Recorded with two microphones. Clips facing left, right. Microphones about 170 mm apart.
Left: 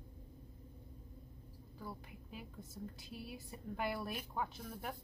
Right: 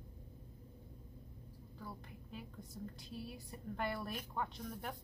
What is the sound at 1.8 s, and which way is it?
A woman's voice, 5° left (ahead or behind).